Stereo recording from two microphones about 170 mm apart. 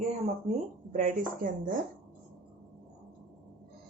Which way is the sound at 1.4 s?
50° right (ahead or behind).